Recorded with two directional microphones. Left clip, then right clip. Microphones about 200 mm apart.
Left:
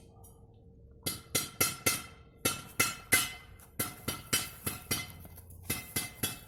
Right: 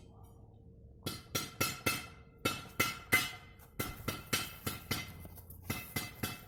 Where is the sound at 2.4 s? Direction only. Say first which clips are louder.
Left 2 dB; 35° left (ahead or behind).